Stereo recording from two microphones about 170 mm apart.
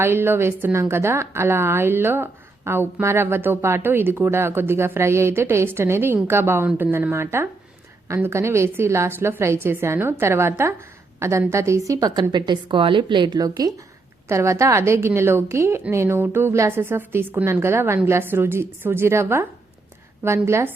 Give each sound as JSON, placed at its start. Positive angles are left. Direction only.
{"t": 0.0, "sound": "a woman's voice", "side_deg": -15}